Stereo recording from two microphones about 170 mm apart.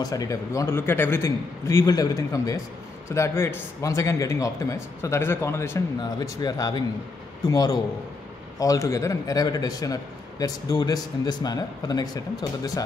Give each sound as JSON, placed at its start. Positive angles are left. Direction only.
{"t": 0.0, "sound": "a man's voice", "side_deg": 20}